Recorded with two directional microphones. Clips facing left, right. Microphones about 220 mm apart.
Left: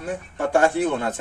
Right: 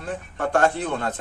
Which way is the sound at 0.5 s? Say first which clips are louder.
Left 2 dB; 10° left (ahead or behind).